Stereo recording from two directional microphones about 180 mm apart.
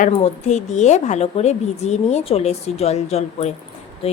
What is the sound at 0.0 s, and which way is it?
A woman's voice, 40° left (ahead or behind).